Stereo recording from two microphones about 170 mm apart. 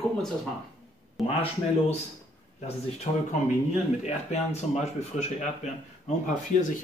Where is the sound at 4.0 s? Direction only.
40° left (ahead or behind).